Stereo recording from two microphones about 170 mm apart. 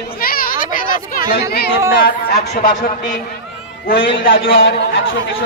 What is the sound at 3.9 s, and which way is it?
A man's voice, 90° left.